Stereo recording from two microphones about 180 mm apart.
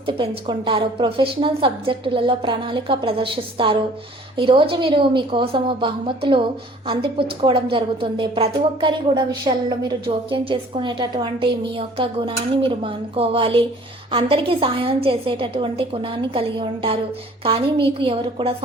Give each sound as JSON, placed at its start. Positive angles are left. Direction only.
{"t": 0.0, "sound": "a woman's voice", "side_deg": -30}